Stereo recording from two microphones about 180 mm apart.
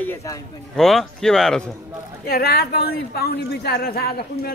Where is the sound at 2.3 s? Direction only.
60° left (ahead or behind).